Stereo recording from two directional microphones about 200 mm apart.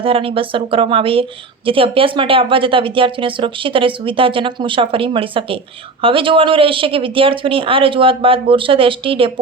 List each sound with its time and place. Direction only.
0.0 s speech: 25° right (ahead or behind)